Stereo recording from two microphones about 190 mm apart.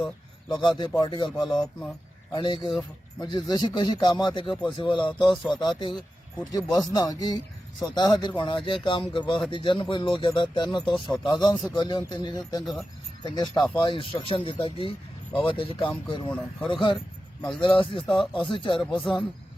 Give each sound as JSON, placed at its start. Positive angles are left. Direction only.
{"t": 0.8, "sound": "speech", "side_deg": 25}
{"t": 1.4, "sound": "speech", "side_deg": 0}
{"t": 2.3, "sound": "speech", "side_deg": 25}
{"t": 5.1, "sound": "speech", "side_deg": 0}
{"t": 5.5, "sound": "speech", "side_deg": 25}
{"t": 18.1, "sound": "speech", "side_deg": 0}
{"t": 18.4, "sound": "speech", "side_deg": 25}
{"t": 18.8, "sound": "speech", "side_deg": 0}